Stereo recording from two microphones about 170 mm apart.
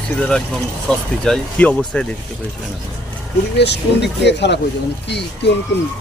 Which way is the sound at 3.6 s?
85° left.